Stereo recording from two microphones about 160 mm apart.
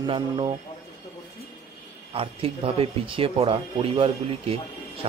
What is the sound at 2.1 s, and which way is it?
Speech, 35° right (ahead or behind).